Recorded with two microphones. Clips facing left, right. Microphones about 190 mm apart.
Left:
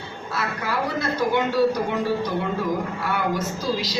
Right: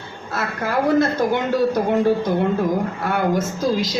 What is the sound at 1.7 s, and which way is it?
A woman's voice, 50° right (ahead or behind).